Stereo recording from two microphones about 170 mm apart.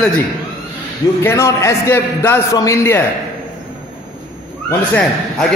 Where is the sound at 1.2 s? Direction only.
15° left (ahead or behind).